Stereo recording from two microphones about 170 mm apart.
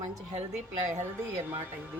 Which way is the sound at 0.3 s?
40° right (ahead or behind).